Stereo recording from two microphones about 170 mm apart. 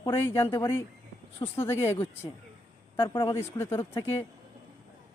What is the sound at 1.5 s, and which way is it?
Speech, 15° left (ahead or behind).